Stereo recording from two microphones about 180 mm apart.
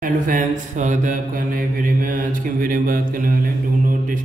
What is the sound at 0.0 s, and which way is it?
Mantra, 50° right (ahead or behind).